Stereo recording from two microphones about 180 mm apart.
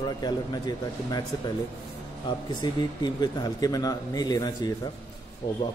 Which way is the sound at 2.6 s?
20° left (ahead or behind).